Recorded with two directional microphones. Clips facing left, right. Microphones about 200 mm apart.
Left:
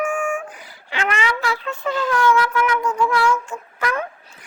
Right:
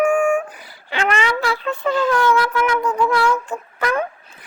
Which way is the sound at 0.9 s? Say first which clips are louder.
Right 3 dB; 35° right (ahead or behind).